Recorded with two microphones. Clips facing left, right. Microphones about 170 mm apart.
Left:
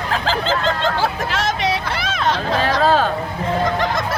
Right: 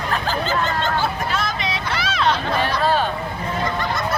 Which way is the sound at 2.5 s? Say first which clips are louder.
Left 3 dB; 90° left.